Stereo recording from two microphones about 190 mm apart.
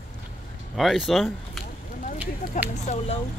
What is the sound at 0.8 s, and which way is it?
Speech, centre (ahead or behind).